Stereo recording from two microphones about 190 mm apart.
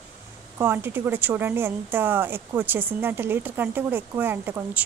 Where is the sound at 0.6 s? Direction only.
10° right (ahead or behind).